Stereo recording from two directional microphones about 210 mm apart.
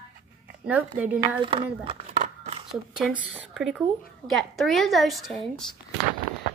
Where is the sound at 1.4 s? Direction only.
25° right (ahead or behind).